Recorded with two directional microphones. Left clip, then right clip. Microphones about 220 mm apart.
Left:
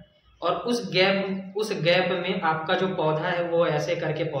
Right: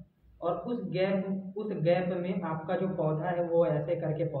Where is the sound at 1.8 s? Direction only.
20° left (ahead or behind).